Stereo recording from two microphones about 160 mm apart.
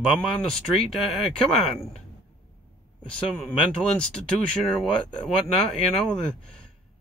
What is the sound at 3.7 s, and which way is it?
Speech, 5° left (ahead or behind).